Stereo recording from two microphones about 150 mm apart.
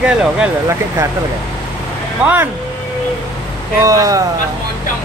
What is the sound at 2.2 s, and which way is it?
Speech, 15° right (ahead or behind).